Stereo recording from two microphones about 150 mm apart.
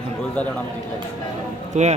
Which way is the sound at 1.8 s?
50° right (ahead or behind).